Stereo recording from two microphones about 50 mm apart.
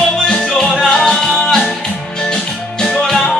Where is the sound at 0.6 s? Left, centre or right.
Centre.